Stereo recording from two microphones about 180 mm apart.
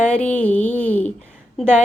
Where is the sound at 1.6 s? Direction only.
Centre (ahead or behind).